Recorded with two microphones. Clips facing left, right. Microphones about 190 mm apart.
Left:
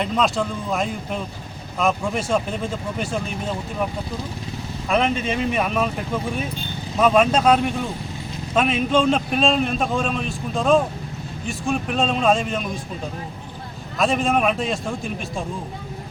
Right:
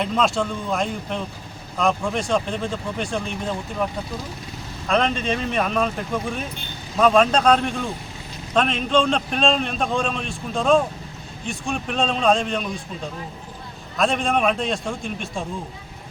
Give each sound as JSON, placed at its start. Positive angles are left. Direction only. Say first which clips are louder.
{"t": 0.0, "sound": "a man's voice", "louder": "even", "side_deg": 0}
{"t": 4.9, "sound": "speech", "louder": "even", "side_deg": 5}
{"t": 7.0, "sound": "a man's voice", "louder": "even", "side_deg": 5}
{"t": 14.0, "sound": "a man's voice", "louder": "left 1 dB", "side_deg": 0}